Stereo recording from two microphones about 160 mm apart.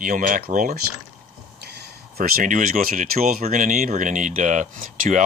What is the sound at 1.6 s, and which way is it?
Speech, 90° right.